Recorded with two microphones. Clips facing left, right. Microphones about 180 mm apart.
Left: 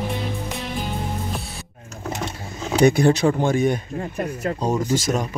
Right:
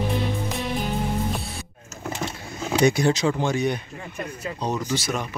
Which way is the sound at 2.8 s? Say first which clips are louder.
Left 4 dB; 55° left (ahead or behind).